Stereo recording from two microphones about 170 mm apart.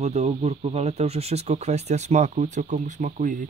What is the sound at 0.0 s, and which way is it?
Speech, 40° right (ahead or behind).